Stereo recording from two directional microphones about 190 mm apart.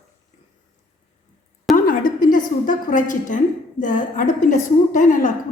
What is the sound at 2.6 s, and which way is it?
A woman's voice, 45° left (ahead or behind).